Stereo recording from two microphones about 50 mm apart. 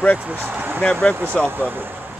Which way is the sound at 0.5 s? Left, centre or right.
Right.